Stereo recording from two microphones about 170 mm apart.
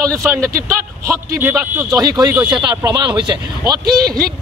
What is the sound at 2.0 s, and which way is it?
A man's voice, 25° right (ahead or behind).